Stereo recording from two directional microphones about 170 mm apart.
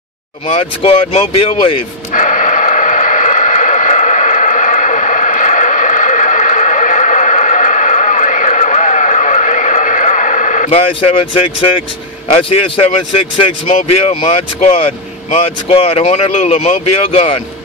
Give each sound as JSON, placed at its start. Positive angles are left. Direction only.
{"t": 0.5, "sound": "speech", "side_deg": 35}
{"t": 2.1, "sound": "radio", "side_deg": 50}
{"t": 10.9, "sound": "speech", "side_deg": 30}
{"t": 12.3, "sound": "speech", "side_deg": 35}